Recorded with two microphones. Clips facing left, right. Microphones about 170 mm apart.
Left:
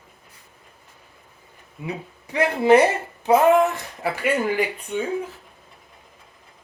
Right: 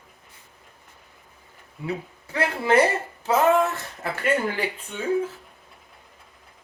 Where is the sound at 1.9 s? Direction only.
15° left (ahead or behind).